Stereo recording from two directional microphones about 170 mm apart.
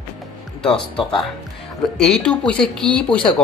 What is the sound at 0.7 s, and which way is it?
Speech, 30° left (ahead or behind).